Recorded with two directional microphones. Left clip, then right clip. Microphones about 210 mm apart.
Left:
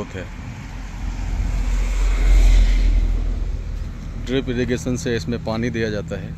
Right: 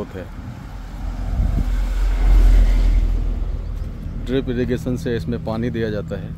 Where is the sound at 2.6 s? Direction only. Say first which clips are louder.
Even; 25° right (ahead or behind).